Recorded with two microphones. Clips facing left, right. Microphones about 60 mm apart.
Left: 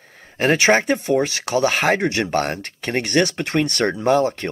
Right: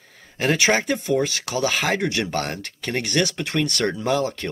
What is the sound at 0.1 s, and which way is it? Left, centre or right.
A man's voice, left.